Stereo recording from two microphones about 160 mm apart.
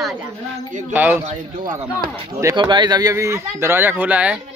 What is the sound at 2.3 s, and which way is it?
A man's voice, 25° right (ahead or behind).